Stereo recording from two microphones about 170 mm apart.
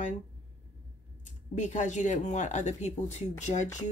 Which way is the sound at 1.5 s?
45° left (ahead or behind).